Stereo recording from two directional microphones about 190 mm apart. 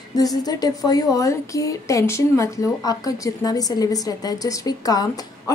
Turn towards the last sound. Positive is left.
turn(degrees=20)  # may be behind; listen again after turning